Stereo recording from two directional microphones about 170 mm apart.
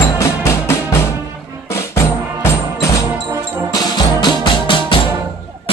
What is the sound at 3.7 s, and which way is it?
Music, 25° left (ahead or behind).